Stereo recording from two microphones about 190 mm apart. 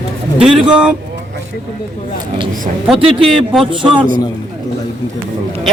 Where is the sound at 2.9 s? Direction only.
30° right (ahead or behind).